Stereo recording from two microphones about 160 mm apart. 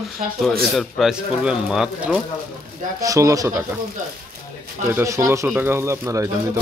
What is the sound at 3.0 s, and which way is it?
Speech, 20° right (ahead or behind).